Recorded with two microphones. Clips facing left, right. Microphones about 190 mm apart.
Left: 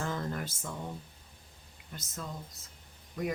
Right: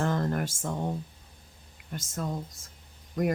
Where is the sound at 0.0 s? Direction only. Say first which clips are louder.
Right 7 dB; 55° right (ahead or behind).